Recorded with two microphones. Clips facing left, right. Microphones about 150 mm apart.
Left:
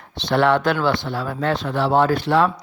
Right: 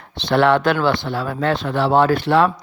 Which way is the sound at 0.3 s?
70° right (ahead or behind).